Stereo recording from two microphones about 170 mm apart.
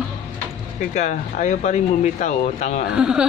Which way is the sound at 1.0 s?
45° left (ahead or behind).